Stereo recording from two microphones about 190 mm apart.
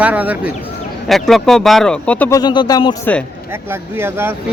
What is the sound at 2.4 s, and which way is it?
Speech, 20° left (ahead or behind).